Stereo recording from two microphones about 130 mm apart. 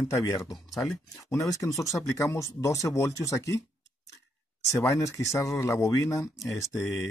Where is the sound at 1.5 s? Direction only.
25° left (ahead or behind).